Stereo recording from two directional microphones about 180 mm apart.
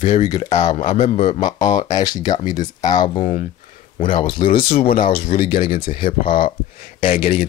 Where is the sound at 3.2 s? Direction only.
45° left (ahead or behind).